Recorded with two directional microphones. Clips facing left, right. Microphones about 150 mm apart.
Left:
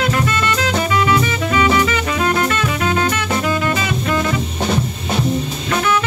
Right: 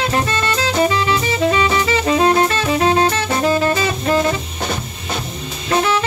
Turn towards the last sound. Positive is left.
turn(degrees=-30)  # may be behind; listen again after turning